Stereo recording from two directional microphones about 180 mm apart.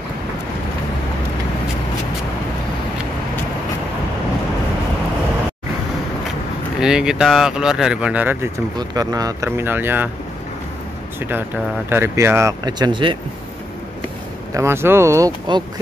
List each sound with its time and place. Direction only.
6.8 s speech: 5° right (ahead or behind)
11.1 s speech: 10° right (ahead or behind); by 13.2 s 25° right (ahead or behind)
14.5 s speech: 15° right (ahead or behind)